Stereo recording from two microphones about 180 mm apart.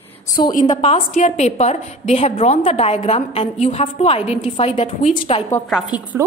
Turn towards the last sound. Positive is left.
turn(degrees=-15)  # may be behind; listen again after turning